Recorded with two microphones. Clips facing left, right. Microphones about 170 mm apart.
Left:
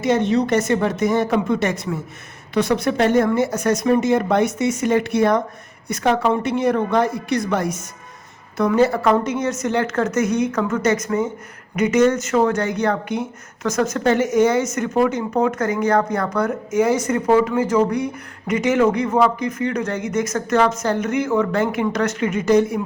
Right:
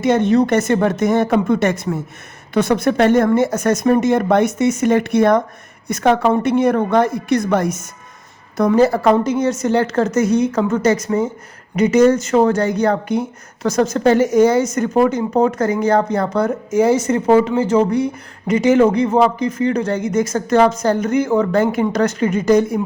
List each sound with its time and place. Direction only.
0.0 s speech: 55° right (ahead or behind); by 22.8 s 35° right (ahead or behind)